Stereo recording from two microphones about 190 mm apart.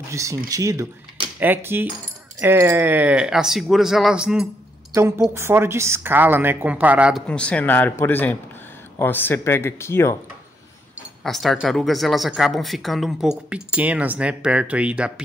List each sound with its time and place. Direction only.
0.1 s speech: 15° right (ahead or behind)
4.9 s a woman's voice: 15° right (ahead or behind)
7.2 s speech: 5° left (ahead or behind)
11.2 s speech: centre (ahead or behind)